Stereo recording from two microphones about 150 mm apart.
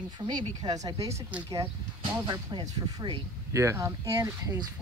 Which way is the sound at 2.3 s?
30° right (ahead or behind).